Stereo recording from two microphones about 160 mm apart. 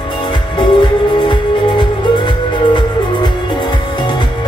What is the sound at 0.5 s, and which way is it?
Music, 30° left (ahead or behind).